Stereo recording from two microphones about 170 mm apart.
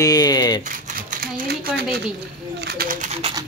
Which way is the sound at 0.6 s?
50° right (ahead or behind).